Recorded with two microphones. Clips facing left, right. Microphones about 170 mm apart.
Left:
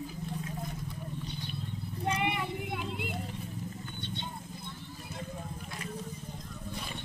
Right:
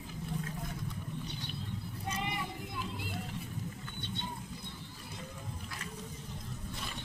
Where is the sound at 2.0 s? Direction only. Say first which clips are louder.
Left 7 dB; 65° left (ahead or behind).